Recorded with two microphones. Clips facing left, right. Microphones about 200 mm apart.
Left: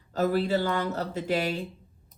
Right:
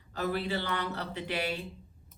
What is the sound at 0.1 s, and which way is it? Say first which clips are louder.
A woman's voice: left 7 dB; 45° left (ahead or behind).